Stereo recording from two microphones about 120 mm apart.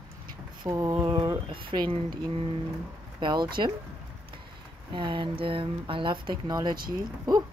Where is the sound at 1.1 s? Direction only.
45° right (ahead or behind).